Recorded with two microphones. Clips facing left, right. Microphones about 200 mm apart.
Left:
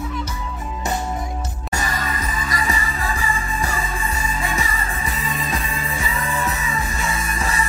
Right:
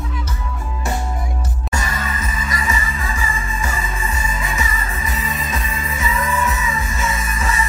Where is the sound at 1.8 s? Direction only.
35° left (ahead or behind).